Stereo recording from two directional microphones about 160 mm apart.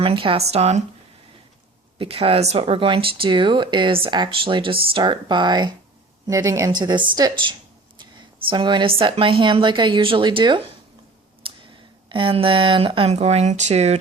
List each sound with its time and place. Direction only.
0.0 s speech: 35° right (ahead or behind)
2.0 s a woman's voice: 35° right (ahead or behind)
11.4 s a sound: 35° right (ahead or behind)
12.0 s speech: 30° right (ahead or behind)